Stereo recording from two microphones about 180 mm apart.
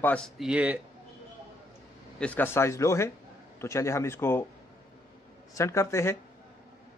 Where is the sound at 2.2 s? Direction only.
10° left (ahead or behind).